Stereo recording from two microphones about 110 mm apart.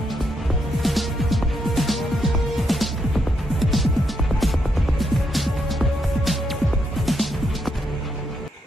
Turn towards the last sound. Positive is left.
turn(degrees=0)  # may be behind; listen again after turning